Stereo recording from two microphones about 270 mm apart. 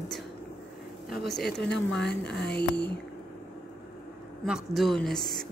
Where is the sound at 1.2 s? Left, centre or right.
Centre.